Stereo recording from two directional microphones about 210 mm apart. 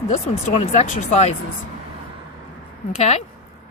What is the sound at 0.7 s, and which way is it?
Speech, 35° left (ahead or behind).